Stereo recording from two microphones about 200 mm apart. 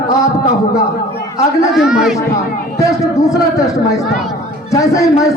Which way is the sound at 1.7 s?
5° right (ahead or behind).